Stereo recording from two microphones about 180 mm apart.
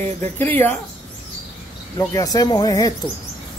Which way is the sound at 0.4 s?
10° left (ahead or behind).